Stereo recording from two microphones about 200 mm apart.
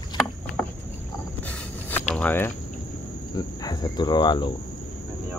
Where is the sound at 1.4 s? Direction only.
5° left (ahead or behind).